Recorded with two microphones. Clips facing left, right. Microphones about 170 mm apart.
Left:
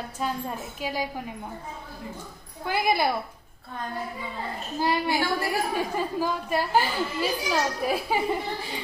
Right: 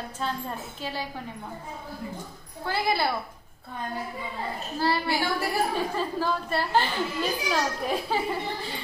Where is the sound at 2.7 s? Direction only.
15° left (ahead or behind).